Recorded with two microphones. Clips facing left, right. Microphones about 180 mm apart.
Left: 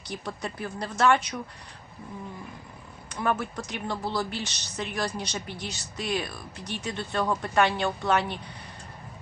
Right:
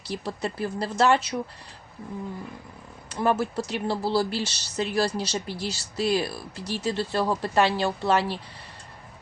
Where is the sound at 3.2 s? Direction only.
35° right (ahead or behind).